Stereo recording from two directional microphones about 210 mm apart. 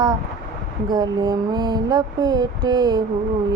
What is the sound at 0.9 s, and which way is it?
Female singing, 20° right (ahead or behind).